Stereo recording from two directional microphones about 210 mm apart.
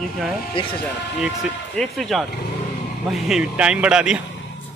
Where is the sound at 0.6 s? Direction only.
25° left (ahead or behind).